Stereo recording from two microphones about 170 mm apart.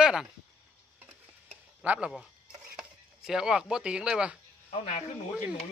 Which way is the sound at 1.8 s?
10° right (ahead or behind).